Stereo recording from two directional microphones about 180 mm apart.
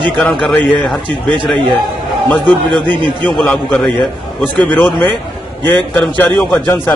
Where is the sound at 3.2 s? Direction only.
5° left (ahead or behind).